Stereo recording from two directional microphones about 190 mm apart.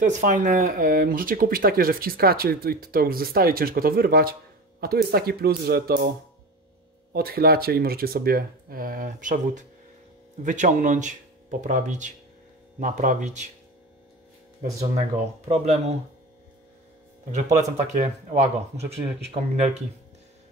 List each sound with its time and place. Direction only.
0.0 s speech: 40° right (ahead or behind)
14.6 s speech: 35° right (ahead or behind)
17.9 s speech: 35° right (ahead or behind)